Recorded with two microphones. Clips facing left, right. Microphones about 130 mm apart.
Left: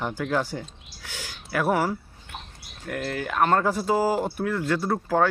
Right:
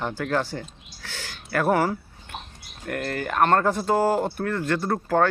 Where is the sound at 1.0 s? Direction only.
15° left (ahead or behind).